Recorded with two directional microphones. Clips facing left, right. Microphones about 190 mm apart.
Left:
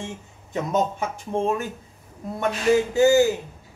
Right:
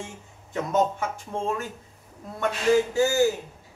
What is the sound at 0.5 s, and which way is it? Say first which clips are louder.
A man's voice: even; 20° left (ahead or behind).